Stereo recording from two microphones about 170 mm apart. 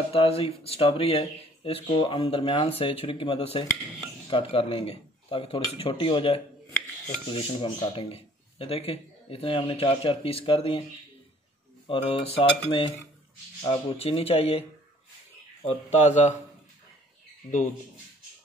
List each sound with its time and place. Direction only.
0.1 s speech: 35° left (ahead or behind)
11.9 s speech: 35° left (ahead or behind)
15.6 s speech: 40° left (ahead or behind)